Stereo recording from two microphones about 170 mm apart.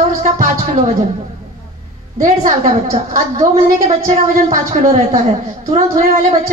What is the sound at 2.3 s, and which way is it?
A woman's voice, 50° right (ahead or behind).